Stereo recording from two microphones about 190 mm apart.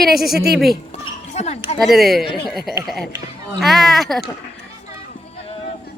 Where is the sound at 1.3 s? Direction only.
35° left (ahead or behind).